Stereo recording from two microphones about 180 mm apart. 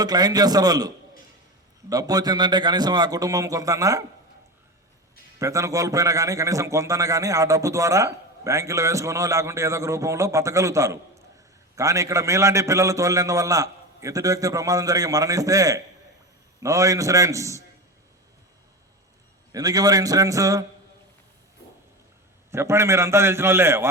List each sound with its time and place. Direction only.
0.0 s a man's voice: 20° right (ahead or behind)
5.4 s a man's voice: 15° right (ahead or behind)
19.5 s a man's voice: 20° right (ahead or behind)
22.5 s a man's voice: 15° right (ahead or behind)